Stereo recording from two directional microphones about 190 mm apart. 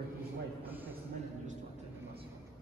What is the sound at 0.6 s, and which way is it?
Speech, 10° right (ahead or behind).